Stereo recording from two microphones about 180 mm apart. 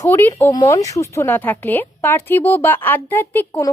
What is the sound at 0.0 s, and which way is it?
A woman's voice, 10° left (ahead or behind).